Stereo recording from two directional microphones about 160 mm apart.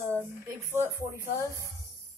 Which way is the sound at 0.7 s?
15° right (ahead or behind).